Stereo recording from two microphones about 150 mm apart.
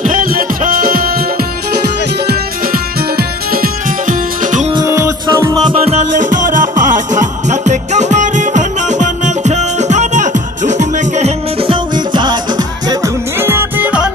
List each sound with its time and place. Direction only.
0.0 s music: 65° right (ahead or behind)
2.2 s music: 85° right; by 4.6 s 60° right (ahead or behind)
4.7 s music: 20° right (ahead or behind)
5.8 s music: 45° right (ahead or behind)
11.7 s music: 30° right (ahead or behind)
13.4 s music: 15° right (ahead or behind)